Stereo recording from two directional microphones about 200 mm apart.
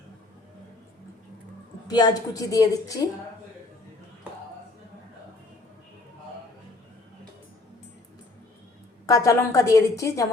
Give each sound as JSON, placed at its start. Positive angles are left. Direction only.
{"t": 1.9, "sound": "a woman's voice", "side_deg": 20}
{"t": 9.0, "sound": "a woman's voice", "side_deg": 15}